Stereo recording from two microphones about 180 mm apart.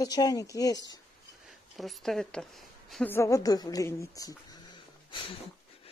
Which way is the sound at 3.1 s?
15° left (ahead or behind).